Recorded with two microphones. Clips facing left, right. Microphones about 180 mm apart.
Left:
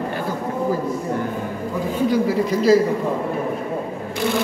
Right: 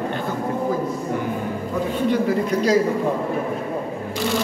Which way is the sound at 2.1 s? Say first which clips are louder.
Left 1 dB; 5° left (ahead or behind).